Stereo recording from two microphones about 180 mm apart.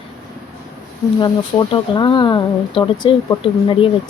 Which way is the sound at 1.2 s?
25° left (ahead or behind).